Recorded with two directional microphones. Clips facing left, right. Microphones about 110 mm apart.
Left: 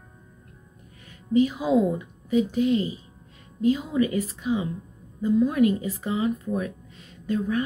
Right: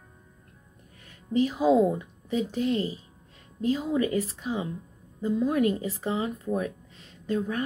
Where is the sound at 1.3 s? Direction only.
35° right (ahead or behind).